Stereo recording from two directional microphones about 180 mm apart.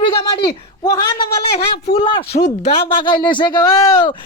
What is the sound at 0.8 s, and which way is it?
Speech, 15° left (ahead or behind).